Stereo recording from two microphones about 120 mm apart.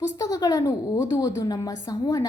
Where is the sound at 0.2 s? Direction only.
30° left (ahead or behind).